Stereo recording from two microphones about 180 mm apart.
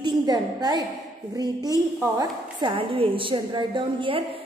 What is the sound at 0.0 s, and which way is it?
A woman's voice, 20° right (ahead or behind).